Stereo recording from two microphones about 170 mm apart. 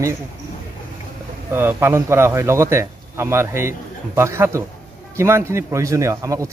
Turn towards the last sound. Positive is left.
turn(degrees=-20)  # may be behind; listen again after turning